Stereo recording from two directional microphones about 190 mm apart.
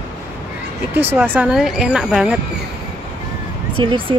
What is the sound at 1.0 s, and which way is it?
Speech, 10° right (ahead or behind).